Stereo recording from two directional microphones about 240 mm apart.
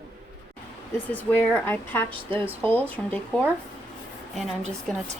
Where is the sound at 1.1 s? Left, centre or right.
Centre.